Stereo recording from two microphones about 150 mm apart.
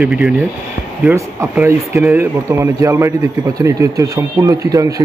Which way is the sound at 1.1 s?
20° right (ahead or behind).